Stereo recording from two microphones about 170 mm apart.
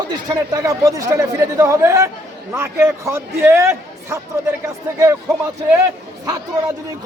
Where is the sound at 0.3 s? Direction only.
20° right (ahead or behind).